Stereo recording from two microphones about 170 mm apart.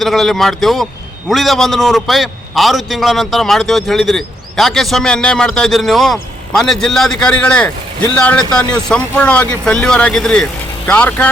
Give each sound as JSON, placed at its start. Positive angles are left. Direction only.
{"t": 0.0, "sound": "a man's voice", "side_deg": 0}